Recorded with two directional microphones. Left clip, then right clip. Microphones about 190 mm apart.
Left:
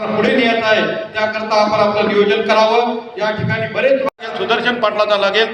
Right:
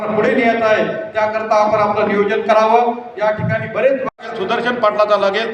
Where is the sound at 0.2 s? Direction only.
15° left (ahead or behind).